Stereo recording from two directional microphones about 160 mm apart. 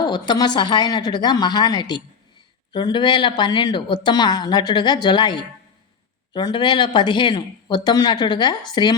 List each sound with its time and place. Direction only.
0.0 s a woman's voice: 25° left (ahead or behind)